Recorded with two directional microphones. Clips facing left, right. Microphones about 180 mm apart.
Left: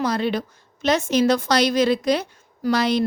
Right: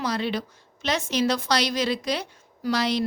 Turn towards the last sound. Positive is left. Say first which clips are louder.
# left 4 dB
turn(degrees=50)  # may be behind; listen again after turning